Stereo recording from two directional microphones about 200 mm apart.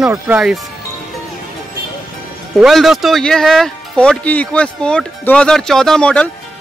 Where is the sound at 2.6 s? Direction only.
Centre (ahead or behind).